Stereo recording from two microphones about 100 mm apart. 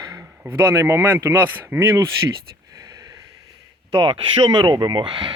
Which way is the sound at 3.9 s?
50° right (ahead or behind).